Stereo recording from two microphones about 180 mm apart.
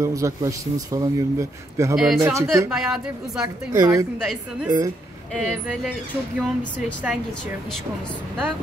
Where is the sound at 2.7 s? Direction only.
Centre (ahead or behind).